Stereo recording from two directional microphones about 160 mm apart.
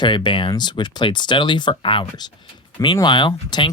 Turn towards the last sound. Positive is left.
turn(degrees=30)  # may be behind; listen again after turning